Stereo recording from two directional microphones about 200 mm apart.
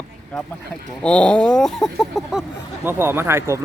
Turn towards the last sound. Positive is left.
turn(degrees=-15)  # may be behind; listen again after turning